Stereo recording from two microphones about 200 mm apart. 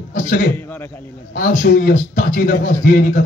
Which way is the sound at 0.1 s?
45° left (ahead or behind).